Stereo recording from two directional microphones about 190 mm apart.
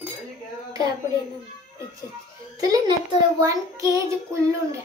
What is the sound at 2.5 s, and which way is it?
A child's voice, 20° right (ahead or behind).